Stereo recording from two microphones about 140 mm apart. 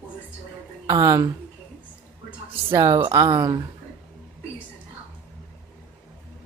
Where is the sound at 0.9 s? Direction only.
20° right (ahead or behind).